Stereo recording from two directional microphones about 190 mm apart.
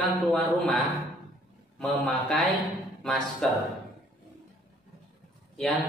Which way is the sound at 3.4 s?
Centre (ahead or behind).